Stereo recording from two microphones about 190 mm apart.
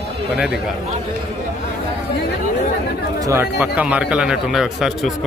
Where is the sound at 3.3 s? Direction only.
10° right (ahead or behind).